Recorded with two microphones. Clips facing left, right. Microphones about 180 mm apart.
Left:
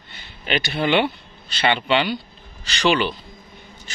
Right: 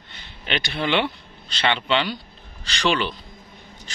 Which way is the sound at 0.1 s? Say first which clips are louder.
Left 3 dB; 5° left (ahead or behind).